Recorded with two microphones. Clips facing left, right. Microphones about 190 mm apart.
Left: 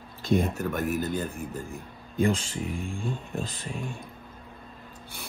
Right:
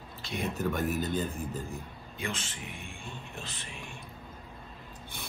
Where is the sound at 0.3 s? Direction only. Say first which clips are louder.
Left 9 dB; 55° left (ahead or behind).